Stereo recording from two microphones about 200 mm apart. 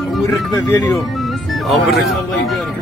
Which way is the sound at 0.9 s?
Centre (ahead or behind).